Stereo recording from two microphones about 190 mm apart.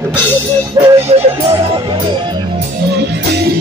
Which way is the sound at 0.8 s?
20° right (ahead or behind).